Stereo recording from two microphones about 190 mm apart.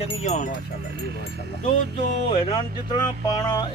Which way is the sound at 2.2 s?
30° left (ahead or behind).